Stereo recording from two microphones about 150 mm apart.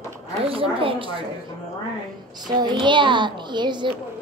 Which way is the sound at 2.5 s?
30° right (ahead or behind).